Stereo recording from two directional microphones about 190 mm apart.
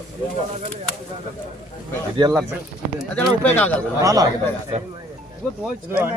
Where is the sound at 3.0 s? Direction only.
5° left (ahead or behind).